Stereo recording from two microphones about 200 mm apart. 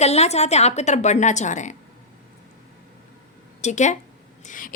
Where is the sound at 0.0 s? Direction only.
35° left (ahead or behind).